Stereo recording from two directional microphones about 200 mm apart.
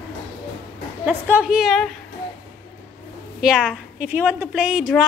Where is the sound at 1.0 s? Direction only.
5° right (ahead or behind).